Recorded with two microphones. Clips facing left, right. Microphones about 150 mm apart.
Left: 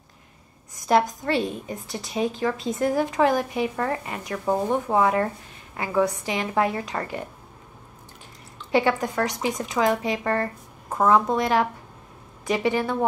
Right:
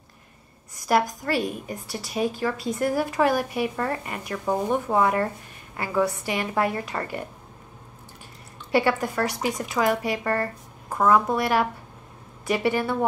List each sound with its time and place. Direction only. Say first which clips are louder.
0.7 s a woman's voice: left 2 dB; 20° left (ahead or behind)
8.7 s a woman's voice: left 1 dB; 20° left (ahead or behind)